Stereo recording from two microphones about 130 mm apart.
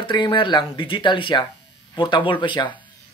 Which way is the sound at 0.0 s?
40° left (ahead or behind).